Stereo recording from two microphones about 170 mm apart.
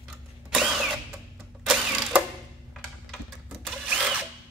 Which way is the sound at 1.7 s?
5° right (ahead or behind).